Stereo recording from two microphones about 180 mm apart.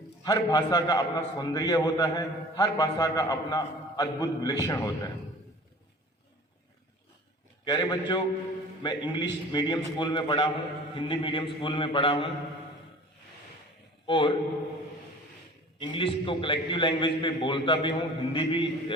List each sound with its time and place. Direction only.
0.2 s a man's voice: 20° left (ahead or behind)
7.6 s a man's voice: 25° left (ahead or behind)
14.1 s a man's voice: 30° left (ahead or behind)
15.8 s a man's voice: 30° left (ahead or behind)